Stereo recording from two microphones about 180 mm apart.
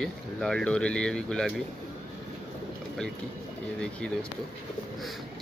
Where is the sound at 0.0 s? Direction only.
5° left (ahead or behind).